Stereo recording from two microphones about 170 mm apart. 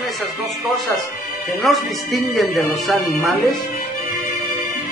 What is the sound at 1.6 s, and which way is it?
Speech, centre (ahead or behind).